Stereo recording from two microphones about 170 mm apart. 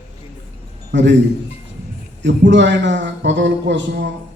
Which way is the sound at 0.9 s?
90° right.